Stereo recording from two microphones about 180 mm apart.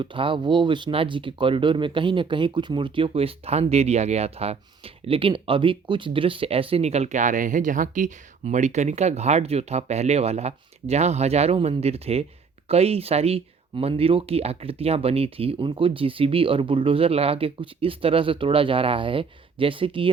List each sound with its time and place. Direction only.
0.0 s speech: 30° right (ahead or behind)